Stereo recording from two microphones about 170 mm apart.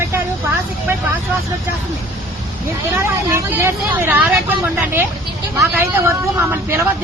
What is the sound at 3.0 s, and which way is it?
Speech, 15° right (ahead or behind).